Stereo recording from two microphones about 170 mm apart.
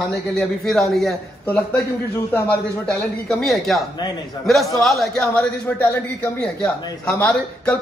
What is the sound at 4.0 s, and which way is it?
Speech, 25° left (ahead or behind).